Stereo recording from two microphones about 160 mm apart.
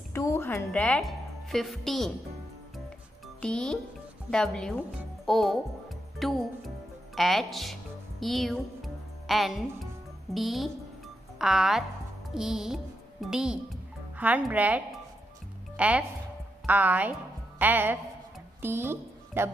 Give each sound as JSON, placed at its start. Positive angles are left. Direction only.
{"t": 0.1, "sound": "a sound", "side_deg": 15}
{"t": 0.7, "sound": "a woman's voice", "side_deg": 5}
{"t": 3.3, "sound": "speech", "side_deg": 5}
{"t": 8.2, "sound": "music", "side_deg": 0}
{"t": 10.3, "sound": "speech", "side_deg": 0}
{"t": 12.4, "sound": "music", "side_deg": 0}
{"t": 14.1, "sound": "speech", "side_deg": -10}